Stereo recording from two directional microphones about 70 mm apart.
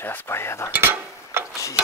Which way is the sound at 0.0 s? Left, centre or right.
Left.